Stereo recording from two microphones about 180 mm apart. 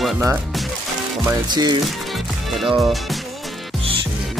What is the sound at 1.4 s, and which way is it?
Music, 25° right (ahead or behind).